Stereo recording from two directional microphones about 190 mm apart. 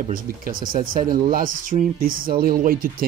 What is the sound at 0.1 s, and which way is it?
Speech, 45° right (ahead or behind).